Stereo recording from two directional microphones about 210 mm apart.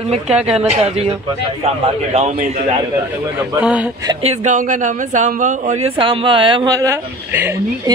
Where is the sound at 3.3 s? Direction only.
5° right (ahead or behind).